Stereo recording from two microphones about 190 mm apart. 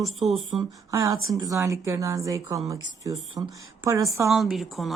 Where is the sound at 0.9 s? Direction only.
15° right (ahead or behind).